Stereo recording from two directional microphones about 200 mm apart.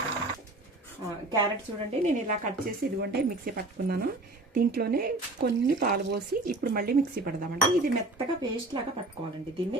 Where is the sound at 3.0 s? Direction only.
50° right (ahead or behind).